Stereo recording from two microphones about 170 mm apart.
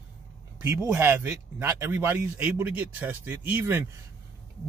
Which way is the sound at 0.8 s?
10° right (ahead or behind).